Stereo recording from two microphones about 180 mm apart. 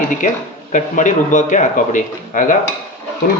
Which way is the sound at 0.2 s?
45° left (ahead or behind).